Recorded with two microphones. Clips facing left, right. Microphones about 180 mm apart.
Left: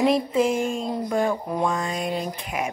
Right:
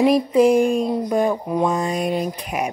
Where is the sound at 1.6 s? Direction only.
20° right (ahead or behind).